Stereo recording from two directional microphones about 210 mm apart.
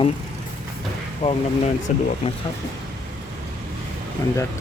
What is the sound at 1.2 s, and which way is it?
Speech, 25° left (ahead or behind).